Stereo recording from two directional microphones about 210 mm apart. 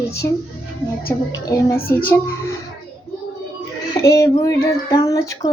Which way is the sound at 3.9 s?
15° left (ahead or behind).